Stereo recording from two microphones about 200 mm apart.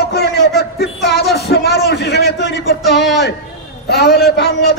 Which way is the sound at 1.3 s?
50° left (ahead or behind).